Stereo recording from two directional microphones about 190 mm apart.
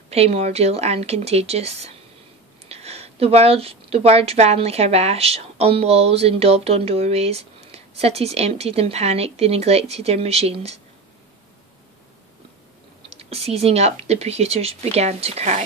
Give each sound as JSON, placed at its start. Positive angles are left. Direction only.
{"t": 0.1, "sound": "a woman's voice", "side_deg": -35}
{"t": 13.2, "sound": "a woman's voice", "side_deg": -30}